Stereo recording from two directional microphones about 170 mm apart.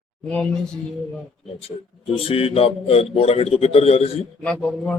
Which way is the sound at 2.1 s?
35° left (ahead or behind).